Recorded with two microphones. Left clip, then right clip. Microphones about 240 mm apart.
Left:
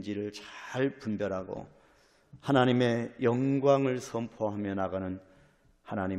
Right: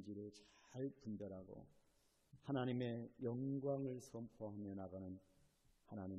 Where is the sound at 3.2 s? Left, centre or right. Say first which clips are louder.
Left 19 dB; left.